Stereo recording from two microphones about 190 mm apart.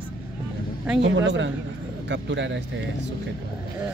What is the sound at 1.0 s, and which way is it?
A man's voice, 70° right (ahead or behind).